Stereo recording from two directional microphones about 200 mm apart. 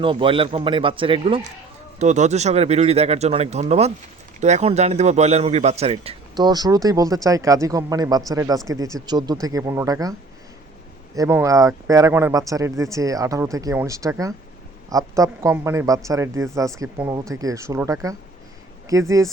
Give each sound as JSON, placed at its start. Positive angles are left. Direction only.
{"t": 0.0, "sound": "a man's voice", "side_deg": -25}